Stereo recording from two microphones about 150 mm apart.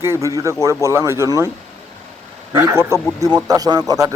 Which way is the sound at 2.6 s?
15° right (ahead or behind).